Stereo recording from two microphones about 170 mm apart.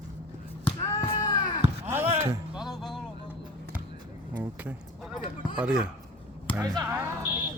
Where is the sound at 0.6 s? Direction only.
35° left (ahead or behind).